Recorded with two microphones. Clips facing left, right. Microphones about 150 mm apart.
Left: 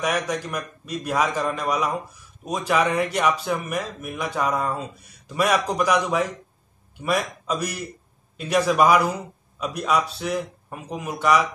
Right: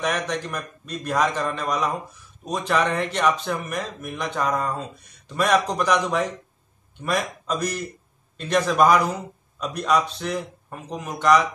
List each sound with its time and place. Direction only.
0.0 s speech: 10° left (ahead or behind)